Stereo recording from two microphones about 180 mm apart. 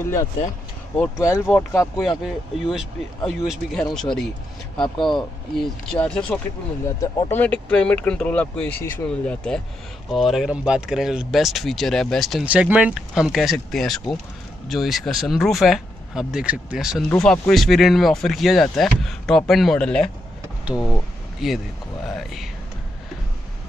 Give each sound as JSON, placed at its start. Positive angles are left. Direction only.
{"t": 0.9, "sound": "speech", "side_deg": 5}
{"t": 1.8, "sound": "speech", "side_deg": 0}
{"t": 4.8, "sound": "speech", "side_deg": 25}
{"t": 5.1, "sound": "speech", "side_deg": 0}
{"t": 21.4, "sound": "speech", "side_deg": 0}